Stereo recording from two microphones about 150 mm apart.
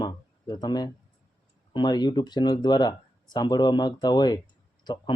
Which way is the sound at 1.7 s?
30° left (ahead or behind).